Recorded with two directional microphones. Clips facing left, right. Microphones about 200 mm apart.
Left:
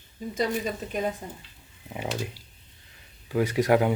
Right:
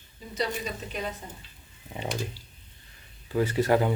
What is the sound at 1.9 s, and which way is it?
Speech, 10° left (ahead or behind).